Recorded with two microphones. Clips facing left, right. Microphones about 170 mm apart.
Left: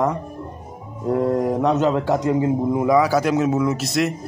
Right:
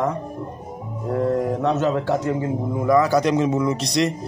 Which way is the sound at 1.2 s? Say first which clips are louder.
Left 1 dB; 15° left (ahead or behind).